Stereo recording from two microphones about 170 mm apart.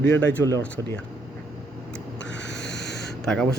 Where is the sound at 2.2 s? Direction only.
90° left.